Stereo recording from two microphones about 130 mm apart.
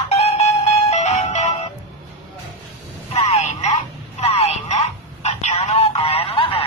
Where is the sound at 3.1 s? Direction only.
55° left (ahead or behind).